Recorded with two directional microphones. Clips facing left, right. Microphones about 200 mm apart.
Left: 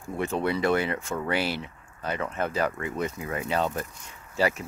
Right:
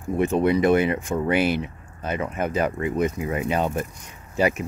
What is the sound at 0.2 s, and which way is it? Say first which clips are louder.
Speech: right 6 dB; 20° right (ahead or behind).